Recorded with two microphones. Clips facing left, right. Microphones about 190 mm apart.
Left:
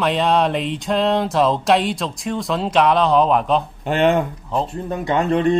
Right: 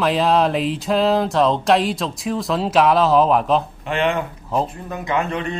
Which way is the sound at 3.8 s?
40° left (ahead or behind).